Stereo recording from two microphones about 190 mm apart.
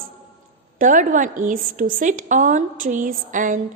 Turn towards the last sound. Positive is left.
turn(degrees=-45)  # may be behind; listen again after turning